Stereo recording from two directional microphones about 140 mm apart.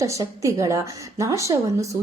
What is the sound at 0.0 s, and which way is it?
A woman's voice, 25° right (ahead or behind).